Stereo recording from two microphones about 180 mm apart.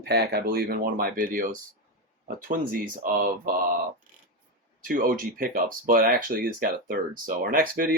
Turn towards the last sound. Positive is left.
turn(degrees=-50)  # may be behind; listen again after turning